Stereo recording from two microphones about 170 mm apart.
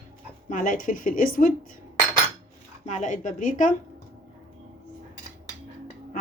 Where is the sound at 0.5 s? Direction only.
50° left (ahead or behind).